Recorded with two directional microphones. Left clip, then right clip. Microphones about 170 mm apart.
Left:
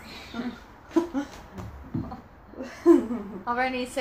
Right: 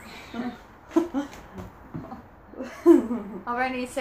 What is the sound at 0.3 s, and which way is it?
Speech, 20° right (ahead or behind).